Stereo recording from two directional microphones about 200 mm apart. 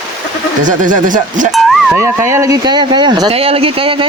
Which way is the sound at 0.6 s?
40° right (ahead or behind).